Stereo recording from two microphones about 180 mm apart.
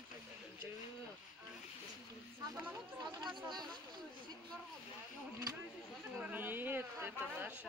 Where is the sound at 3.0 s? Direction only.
25° right (ahead or behind).